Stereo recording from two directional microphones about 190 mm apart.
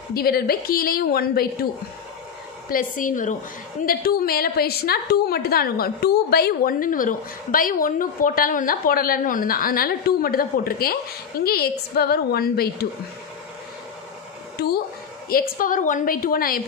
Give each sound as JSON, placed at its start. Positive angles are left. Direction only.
{"t": 0.1, "sound": "a woman's voice", "side_deg": 55}
{"t": 2.7, "sound": "a woman's voice", "side_deg": 45}
{"t": 14.6, "sound": "a woman's voice", "side_deg": 60}
{"t": 15.5, "sound": "a woman's voice", "side_deg": 45}